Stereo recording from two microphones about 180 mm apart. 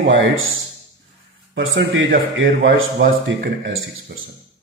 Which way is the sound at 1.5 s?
90° right.